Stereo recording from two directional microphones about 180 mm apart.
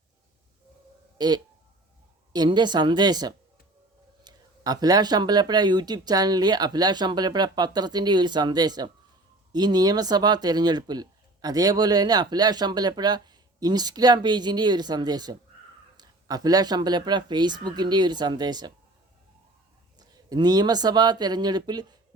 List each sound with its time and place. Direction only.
1.2 s speech: 25° right (ahead or behind)
20.0 s speech: 20° right (ahead or behind)